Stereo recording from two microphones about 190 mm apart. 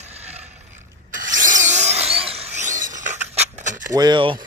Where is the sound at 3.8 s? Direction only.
20° right (ahead or behind).